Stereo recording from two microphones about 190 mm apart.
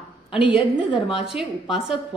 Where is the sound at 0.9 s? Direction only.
25° left (ahead or behind).